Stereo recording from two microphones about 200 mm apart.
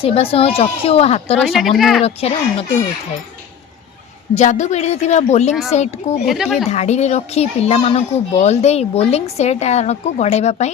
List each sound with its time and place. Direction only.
0.0 s a woman's voice: 30° left (ahead or behind)
1.5 s speech: centre (ahead or behind)
2.0 s speech: 30° left (ahead or behind)
4.4 s speech: 35° left (ahead or behind)
6.2 s speech: centre (ahead or behind)
6.7 s speech: 35° left (ahead or behind)